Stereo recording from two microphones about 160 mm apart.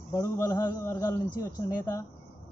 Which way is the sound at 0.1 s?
20° left (ahead or behind).